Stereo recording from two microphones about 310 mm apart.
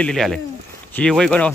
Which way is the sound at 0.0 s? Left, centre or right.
Centre.